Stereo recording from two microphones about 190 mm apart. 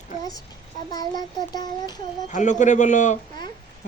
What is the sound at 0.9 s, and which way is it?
A child's voice, 20° left (ahead or behind).